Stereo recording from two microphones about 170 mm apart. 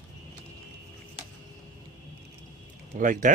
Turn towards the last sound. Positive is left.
turn(degrees=-50)  # may be behind; listen again after turning